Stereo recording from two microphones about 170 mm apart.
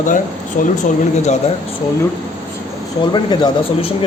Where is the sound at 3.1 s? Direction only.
25° left (ahead or behind).